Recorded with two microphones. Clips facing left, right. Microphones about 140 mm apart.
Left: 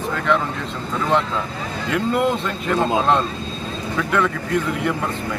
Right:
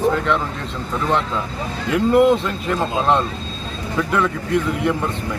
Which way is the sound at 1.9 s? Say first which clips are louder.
Right 6 dB; centre (ahead or behind).